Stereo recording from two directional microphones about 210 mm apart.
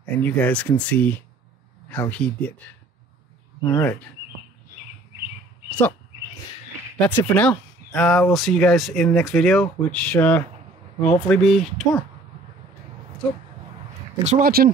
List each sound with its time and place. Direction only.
0.0 s speech: 5° left (ahead or behind)
3.6 s speech: 10° left (ahead or behind)
7.0 s speech: 10° left (ahead or behind)
14.2 s speech: 40° right (ahead or behind)